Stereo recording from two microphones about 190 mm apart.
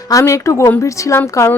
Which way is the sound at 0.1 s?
15° left (ahead or behind).